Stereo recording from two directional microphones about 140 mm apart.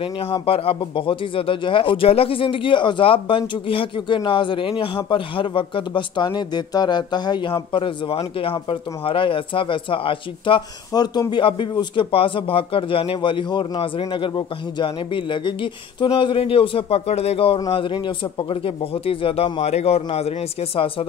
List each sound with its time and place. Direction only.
0.0 s speech: 40° left (ahead or behind)
10.9 s speech: 30° left (ahead or behind); by 20.9 s 45° left (ahead or behind)